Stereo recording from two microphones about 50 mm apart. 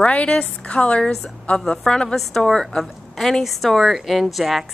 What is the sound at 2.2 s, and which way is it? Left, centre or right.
Speech, centre.